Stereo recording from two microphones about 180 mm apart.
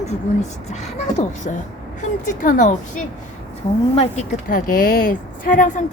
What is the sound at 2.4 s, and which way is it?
Speech, 45° left (ahead or behind).